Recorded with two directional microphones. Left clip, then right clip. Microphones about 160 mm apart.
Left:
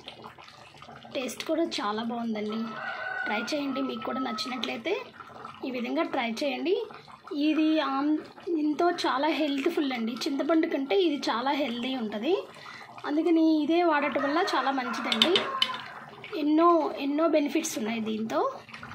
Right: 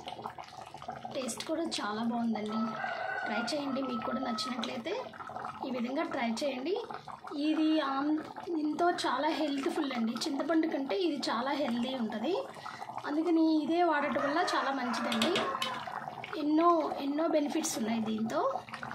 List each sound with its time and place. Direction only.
1.1 s speech: 15° left (ahead or behind)
16.3 s speech: 10° left (ahead or behind)